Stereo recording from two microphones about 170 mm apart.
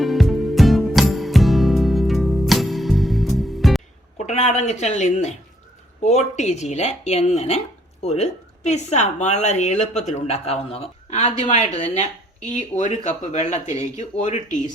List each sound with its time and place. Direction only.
0.0 s music: centre (ahead or behind)
4.2 s speech: 40° left (ahead or behind)
6.3 s speech: 40° left (ahead or behind)